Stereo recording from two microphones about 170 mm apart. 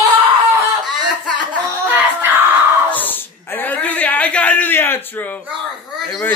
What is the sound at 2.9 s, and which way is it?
Speech, 10° left (ahead or behind).